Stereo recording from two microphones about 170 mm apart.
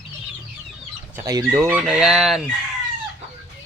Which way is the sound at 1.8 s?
Centre (ahead or behind).